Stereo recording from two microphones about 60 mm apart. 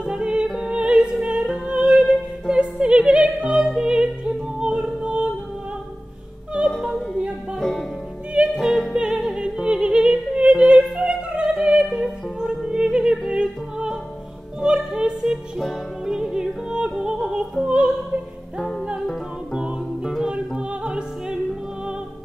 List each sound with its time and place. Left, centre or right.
0.0 s music: centre
6.8 s yodeling: centre
8.5 s music: centre
17.6 s opera: centre
18.6 s music: centre
19.5 s music: centre
20.3 s opera: centre